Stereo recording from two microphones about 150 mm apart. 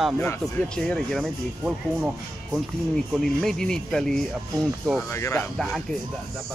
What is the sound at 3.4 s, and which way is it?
Speech, 5° left (ahead or behind).